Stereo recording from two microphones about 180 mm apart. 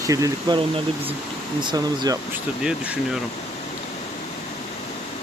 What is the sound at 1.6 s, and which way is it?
Speech, 25° right (ahead or behind).